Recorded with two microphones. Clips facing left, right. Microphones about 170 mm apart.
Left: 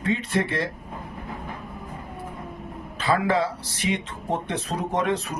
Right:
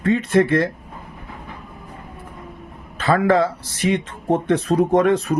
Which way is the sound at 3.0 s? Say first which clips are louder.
Right 6 dB; 55° right (ahead or behind).